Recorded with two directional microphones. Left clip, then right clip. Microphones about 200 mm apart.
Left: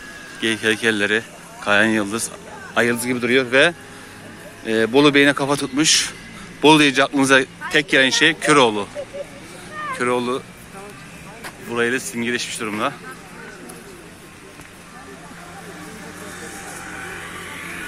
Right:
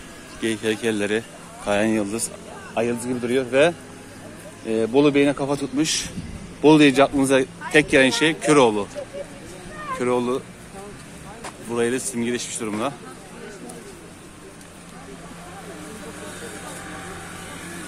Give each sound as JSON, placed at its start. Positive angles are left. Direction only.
{"t": 0.4, "sound": "speech", "side_deg": 0}
{"t": 2.7, "sound": "a man's voice", "side_deg": 15}
{"t": 9.9, "sound": "speech", "side_deg": -5}
{"t": 11.4, "sound": "speech", "side_deg": -10}